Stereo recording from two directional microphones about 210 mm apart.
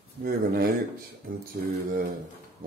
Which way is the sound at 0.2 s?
45° right (ahead or behind).